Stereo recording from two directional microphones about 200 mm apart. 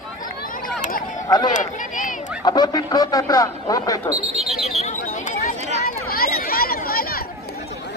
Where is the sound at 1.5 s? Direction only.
40° left (ahead or behind).